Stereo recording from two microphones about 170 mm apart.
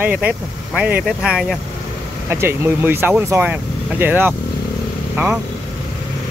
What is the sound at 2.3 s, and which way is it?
Speech, 15° right (ahead or behind).